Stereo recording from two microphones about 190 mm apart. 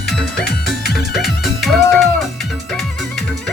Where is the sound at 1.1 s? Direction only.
Centre (ahead or behind).